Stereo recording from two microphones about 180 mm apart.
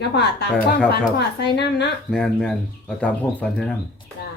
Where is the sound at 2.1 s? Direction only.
5° left (ahead or behind).